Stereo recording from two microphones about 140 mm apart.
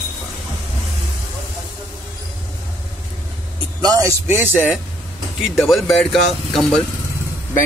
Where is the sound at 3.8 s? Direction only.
30° right (ahead or behind).